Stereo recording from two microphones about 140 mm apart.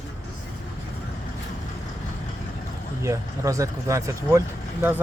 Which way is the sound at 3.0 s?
20° right (ahead or behind).